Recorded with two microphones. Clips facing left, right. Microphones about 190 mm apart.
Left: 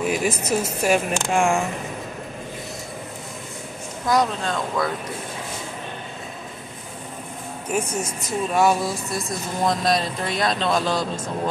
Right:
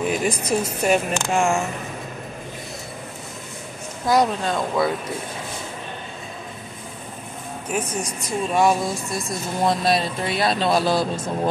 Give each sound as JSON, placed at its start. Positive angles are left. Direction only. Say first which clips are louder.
{"t": 0.1, "sound": "speech", "louder": "even", "side_deg": 5}
{"t": 4.1, "sound": "speech", "louder": "right 2 dB", "side_deg": -10}
{"t": 7.7, "sound": "a woman's voice", "louder": "left 1 dB", "side_deg": 10}